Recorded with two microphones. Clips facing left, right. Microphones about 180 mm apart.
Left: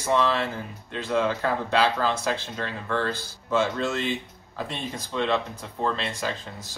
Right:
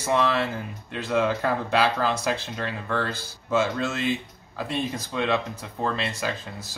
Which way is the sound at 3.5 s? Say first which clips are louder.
Even; 5° right (ahead or behind).